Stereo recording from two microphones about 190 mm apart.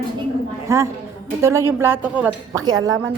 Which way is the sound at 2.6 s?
20° right (ahead or behind).